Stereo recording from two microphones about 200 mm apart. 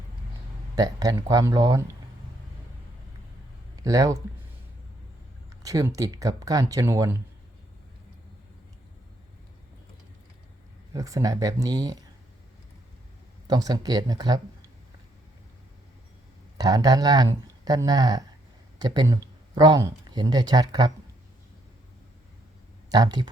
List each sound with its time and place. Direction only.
0.8 s speech: 20° right (ahead or behind)
3.8 s speech: 15° right (ahead or behind)
5.6 s speech: 15° right (ahead or behind)
10.9 s speech: 15° right (ahead or behind)
13.5 s speech: 20° right (ahead or behind)
16.6 s speech: 20° right (ahead or behind)
22.9 s speech: 20° right (ahead or behind)